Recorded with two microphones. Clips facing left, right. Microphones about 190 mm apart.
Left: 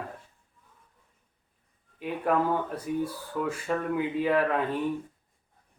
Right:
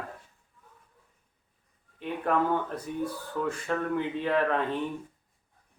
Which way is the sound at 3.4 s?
10° left (ahead or behind).